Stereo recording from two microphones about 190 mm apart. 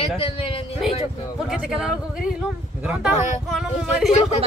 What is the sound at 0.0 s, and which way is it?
Speech, 30° left (ahead or behind).